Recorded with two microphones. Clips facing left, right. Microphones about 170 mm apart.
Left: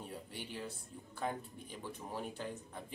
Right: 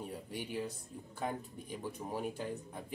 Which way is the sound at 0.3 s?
10° right (ahead or behind).